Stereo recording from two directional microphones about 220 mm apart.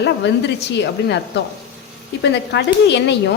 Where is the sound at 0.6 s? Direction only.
50° left (ahead or behind).